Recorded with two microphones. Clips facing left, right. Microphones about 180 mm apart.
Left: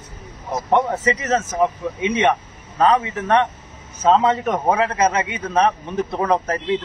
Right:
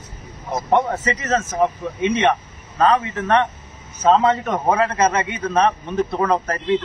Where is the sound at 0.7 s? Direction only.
15° left (ahead or behind).